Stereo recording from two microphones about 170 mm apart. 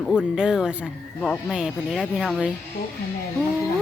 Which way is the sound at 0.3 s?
5° right (ahead or behind).